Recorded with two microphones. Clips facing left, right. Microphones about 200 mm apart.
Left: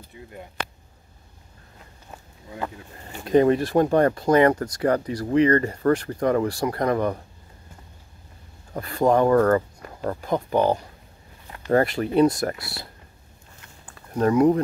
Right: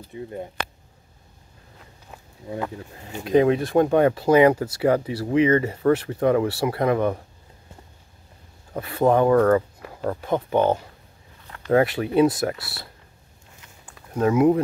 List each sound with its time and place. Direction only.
0.1 s speech: 30° right (ahead or behind)
3.3 s speech: centre (ahead or behind)
8.7 s speech: 5° right (ahead or behind)
14.1 s speech: 5° right (ahead or behind)